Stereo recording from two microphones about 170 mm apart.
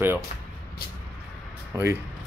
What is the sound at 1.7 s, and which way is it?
Speech, 20° right (ahead or behind).